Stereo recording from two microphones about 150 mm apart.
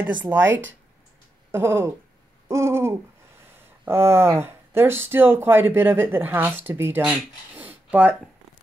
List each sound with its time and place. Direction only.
0.0 s speech: 10° right (ahead or behind)